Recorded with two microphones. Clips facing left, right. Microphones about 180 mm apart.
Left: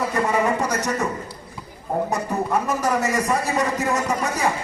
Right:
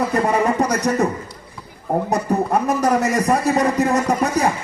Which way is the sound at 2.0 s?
35° right (ahead or behind).